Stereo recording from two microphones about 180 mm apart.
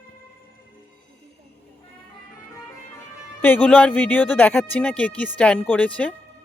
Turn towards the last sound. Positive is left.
turn(degrees=5)  # may be behind; listen again after turning